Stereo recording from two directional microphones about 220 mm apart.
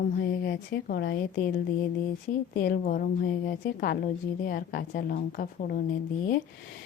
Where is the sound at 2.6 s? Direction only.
40° left (ahead or behind).